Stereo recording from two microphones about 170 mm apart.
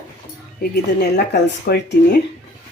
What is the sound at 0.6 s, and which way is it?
Speech, 70° left (ahead or behind).